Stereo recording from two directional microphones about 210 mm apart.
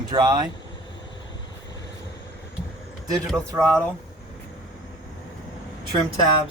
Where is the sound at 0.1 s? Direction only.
20° right (ahead or behind).